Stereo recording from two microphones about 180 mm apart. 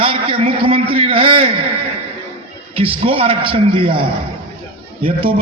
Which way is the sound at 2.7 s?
30° right (ahead or behind).